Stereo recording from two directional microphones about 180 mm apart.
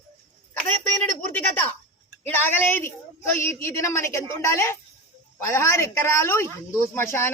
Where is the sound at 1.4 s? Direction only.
10° left (ahead or behind).